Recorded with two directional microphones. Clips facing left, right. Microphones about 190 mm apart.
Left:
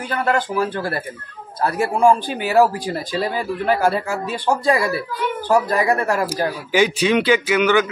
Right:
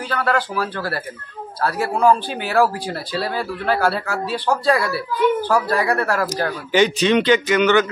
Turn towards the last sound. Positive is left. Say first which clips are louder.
# right 1 dB
turn(degrees=5)  # may be behind; listen again after turning